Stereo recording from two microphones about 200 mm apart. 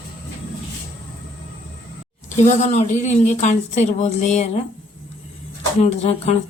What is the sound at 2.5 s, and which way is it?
Speech, 35° left (ahead or behind).